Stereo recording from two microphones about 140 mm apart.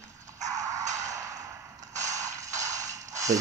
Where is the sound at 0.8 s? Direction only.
60° right (ahead or behind).